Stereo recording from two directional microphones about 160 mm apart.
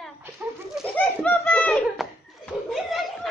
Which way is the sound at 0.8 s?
5° left (ahead or behind).